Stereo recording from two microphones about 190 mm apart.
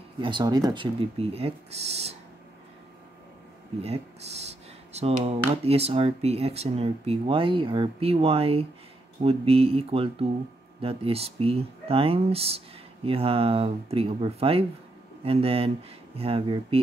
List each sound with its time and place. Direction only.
0.2 s speech: 25° right (ahead or behind)
4.9 s speech: 30° right (ahead or behind)